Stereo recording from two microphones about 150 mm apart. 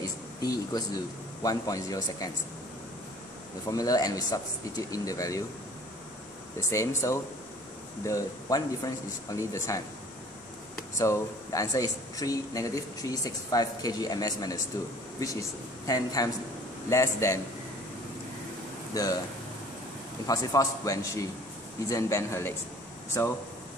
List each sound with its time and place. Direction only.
0.0 s speech: 25° left (ahead or behind)
3.7 s speech: 25° left (ahead or behind)
6.7 s speech: 20° left (ahead or behind)
11.0 s speech: 20° left (ahead or behind)
18.9 s speech: 25° left (ahead or behind)
20.2 s speech: 20° left (ahead or behind)